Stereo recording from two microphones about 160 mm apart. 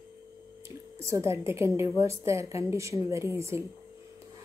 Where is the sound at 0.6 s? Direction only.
20° right (ahead or behind).